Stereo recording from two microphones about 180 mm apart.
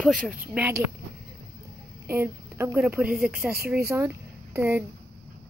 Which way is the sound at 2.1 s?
15° right (ahead or behind).